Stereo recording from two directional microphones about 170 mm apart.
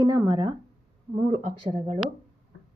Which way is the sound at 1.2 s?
35° right (ahead or behind).